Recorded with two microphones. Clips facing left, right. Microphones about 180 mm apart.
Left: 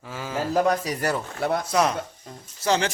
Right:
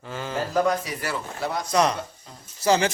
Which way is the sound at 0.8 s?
45° left (ahead or behind).